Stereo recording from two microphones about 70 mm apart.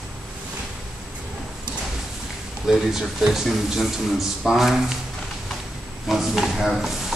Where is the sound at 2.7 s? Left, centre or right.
Centre.